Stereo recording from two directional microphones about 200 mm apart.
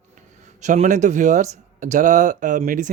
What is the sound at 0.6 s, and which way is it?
Speech, 35° right (ahead or behind).